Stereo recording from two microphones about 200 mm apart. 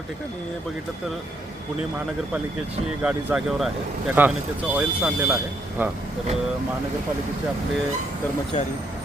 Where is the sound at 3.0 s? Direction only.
5° right (ahead or behind).